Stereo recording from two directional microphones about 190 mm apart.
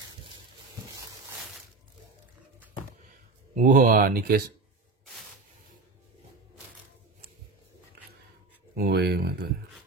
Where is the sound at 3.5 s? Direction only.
45° right (ahead or behind).